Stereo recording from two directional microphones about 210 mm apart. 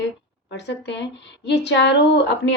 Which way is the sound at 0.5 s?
55° left (ahead or behind).